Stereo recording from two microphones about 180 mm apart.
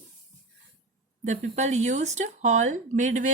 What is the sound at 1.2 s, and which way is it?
Speech, 40° right (ahead or behind).